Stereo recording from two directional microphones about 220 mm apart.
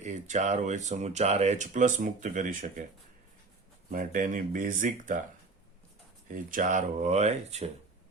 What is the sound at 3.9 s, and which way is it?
Speech, 40° right (ahead or behind).